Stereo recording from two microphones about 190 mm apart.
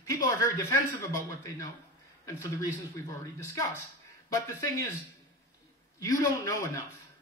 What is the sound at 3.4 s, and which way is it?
Speech, 15° left (ahead or behind).